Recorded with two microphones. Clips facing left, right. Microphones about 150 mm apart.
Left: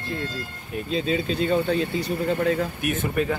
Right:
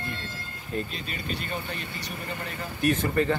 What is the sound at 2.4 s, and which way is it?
Speech, 75° left (ahead or behind).